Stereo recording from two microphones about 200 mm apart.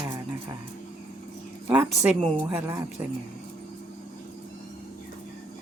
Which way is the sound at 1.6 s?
10° right (ahead or behind).